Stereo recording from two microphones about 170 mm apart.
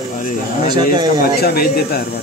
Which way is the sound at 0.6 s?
25° right (ahead or behind).